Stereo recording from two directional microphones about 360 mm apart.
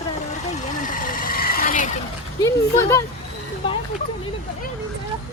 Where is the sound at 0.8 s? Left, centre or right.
Left.